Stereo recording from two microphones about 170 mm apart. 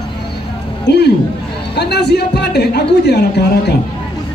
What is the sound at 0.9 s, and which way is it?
A man's voice, 80° left.